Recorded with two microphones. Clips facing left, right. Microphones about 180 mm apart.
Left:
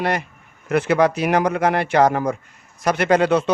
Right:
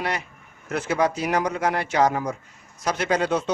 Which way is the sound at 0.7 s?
65° left (ahead or behind).